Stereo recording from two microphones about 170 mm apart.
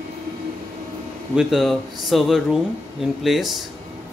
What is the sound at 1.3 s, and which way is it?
Speech, 5° right (ahead or behind).